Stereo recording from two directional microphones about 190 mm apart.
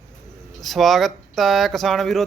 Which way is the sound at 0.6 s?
Centre (ahead or behind).